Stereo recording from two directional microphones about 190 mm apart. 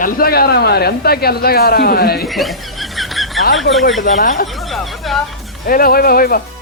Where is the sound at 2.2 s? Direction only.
Centre (ahead or behind).